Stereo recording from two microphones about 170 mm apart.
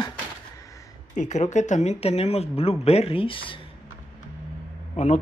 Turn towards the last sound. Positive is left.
turn(degrees=45)  # may be behind; listen again after turning